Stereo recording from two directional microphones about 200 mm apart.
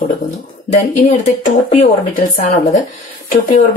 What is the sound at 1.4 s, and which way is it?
Speech, 40° left (ahead or behind).